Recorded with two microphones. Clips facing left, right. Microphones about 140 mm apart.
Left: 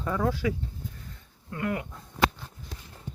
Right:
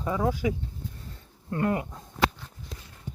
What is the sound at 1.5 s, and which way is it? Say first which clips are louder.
Speech: right 4 dB; 35° right (ahead or behind).